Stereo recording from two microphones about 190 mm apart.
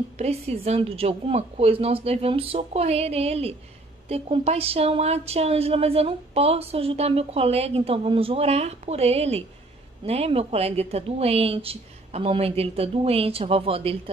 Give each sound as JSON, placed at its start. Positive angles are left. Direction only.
{"t": 0.2, "sound": "speech", "side_deg": -30}